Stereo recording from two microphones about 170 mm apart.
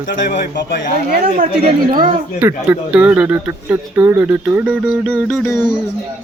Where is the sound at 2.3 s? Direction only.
10° right (ahead or behind).